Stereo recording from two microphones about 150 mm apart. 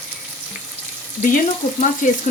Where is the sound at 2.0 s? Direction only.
60° left (ahead or behind).